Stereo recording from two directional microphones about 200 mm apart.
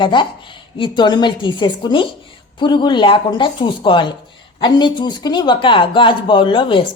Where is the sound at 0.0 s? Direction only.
25° left (ahead or behind).